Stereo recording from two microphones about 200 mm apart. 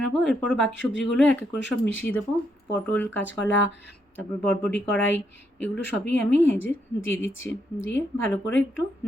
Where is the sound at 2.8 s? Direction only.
10° left (ahead or behind).